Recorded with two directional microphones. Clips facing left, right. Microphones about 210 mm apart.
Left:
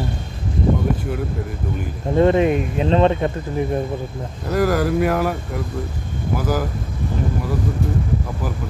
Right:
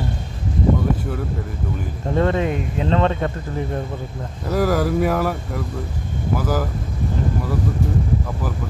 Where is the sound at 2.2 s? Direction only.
20° left (ahead or behind).